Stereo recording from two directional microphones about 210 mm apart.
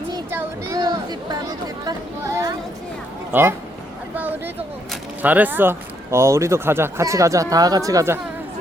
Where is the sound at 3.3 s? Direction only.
10° right (ahead or behind).